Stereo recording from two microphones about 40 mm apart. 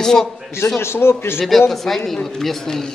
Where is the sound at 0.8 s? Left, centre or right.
Left.